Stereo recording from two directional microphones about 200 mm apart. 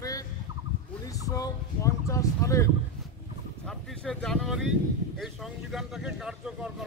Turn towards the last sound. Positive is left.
turn(degrees=-5)  # may be behind; listen again after turning